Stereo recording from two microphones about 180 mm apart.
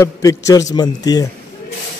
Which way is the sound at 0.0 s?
20° left (ahead or behind).